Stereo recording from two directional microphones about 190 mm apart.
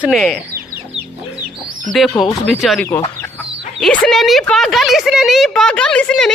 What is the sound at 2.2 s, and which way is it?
Speech, centre (ahead or behind).